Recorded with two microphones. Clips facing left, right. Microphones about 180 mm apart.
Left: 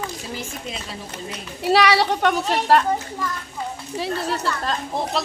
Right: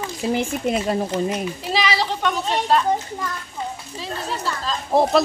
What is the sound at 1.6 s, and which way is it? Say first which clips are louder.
A child's voice: left 8 dB; 65° left (ahead or behind).